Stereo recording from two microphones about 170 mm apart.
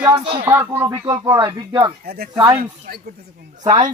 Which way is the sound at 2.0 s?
65° right (ahead or behind).